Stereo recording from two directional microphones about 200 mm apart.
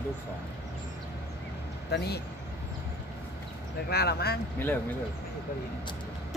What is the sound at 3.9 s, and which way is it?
Speech, 50° left (ahead or behind).